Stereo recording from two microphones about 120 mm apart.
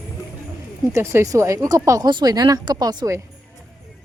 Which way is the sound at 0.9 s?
20° right (ahead or behind).